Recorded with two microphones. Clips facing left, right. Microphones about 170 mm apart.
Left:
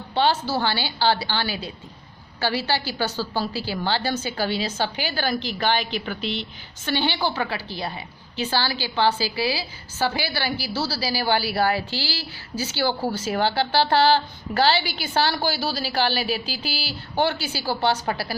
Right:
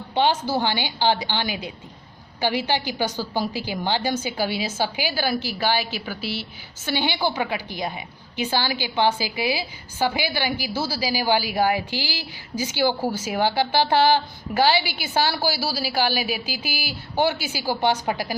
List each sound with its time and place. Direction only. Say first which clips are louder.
0.1 s a woman's voice: right 1 dB; 15° right (ahead or behind)